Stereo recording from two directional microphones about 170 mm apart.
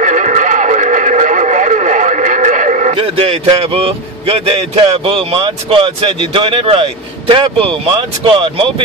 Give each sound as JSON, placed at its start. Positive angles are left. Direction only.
{"t": 0.0, "sound": "neigh", "side_deg": -45}
{"t": 5.4, "sound": "speech", "side_deg": -30}